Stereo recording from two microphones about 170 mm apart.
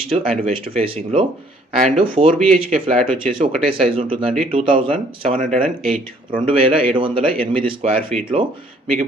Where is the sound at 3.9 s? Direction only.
35° right (ahead or behind).